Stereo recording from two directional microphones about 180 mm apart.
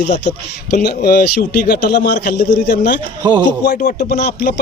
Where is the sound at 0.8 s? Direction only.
60° left (ahead or behind).